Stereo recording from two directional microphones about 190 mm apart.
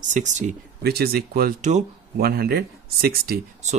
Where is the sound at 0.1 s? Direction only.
40° right (ahead or behind).